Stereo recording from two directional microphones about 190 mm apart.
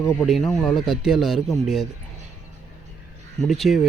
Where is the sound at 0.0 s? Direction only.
15° left (ahead or behind).